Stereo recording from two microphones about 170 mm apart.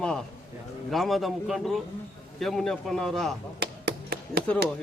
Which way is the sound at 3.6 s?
75° right (ahead or behind).